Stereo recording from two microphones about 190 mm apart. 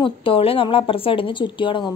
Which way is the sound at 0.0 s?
30° left (ahead or behind).